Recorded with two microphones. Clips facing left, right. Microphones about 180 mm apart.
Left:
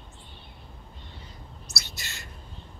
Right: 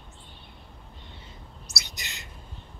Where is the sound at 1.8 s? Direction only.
15° right (ahead or behind).